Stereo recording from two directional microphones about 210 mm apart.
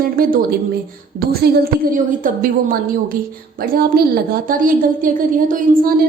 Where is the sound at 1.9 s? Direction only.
40° right (ahead or behind).